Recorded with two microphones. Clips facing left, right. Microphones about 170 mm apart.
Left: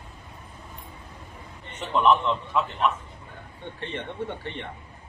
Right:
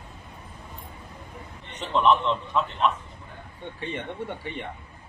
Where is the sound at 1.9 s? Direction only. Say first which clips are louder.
Even; 5° left (ahead or behind).